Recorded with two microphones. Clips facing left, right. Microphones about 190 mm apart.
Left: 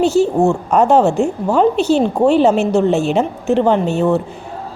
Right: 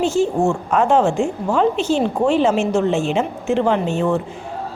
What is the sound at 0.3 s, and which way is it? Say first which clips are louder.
A woman's voice: left 4 dB; 40° left (ahead or behind).